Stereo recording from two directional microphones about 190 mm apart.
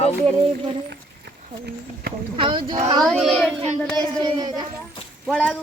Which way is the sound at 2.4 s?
25° right (ahead or behind).